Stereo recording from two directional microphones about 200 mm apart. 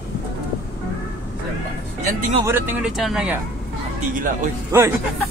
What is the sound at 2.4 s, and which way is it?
Speech, 10° right (ahead or behind).